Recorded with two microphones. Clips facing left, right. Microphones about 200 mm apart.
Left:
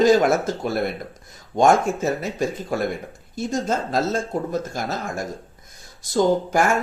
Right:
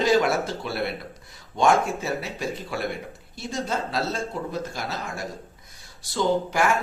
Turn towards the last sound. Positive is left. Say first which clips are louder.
# left 3 dB
turn(degrees=45)  # may be behind; listen again after turning